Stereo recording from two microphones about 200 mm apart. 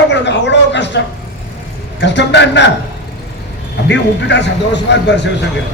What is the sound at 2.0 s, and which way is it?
Speech, 60° left (ahead or behind).